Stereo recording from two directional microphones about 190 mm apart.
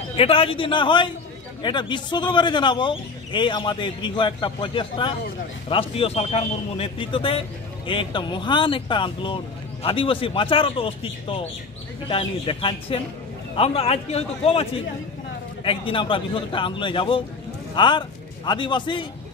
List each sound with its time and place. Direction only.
0.1 s a man's voice: 30° left (ahead or behind)